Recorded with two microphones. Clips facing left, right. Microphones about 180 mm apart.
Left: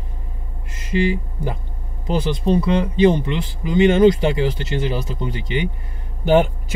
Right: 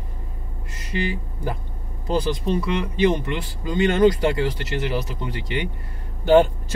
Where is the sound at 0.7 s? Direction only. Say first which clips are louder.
Left 7 dB; 25° left (ahead or behind).